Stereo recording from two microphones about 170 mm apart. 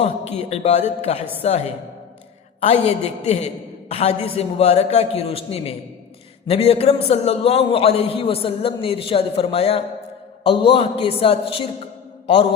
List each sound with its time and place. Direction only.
0.0 s a man's voice: 40° left (ahead or behind)